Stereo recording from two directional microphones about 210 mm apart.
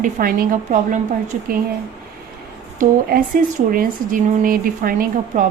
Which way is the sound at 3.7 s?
40° right (ahead or behind).